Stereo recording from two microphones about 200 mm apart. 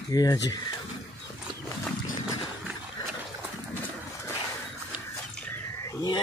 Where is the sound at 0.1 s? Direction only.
20° left (ahead or behind).